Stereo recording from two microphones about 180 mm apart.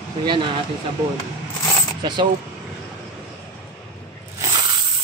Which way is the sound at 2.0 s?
25° right (ahead or behind).